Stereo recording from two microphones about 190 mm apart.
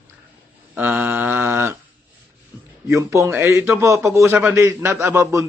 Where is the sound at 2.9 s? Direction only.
15° right (ahead or behind).